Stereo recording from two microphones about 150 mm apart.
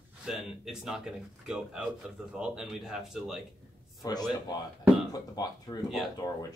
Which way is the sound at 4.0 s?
25° left (ahead or behind).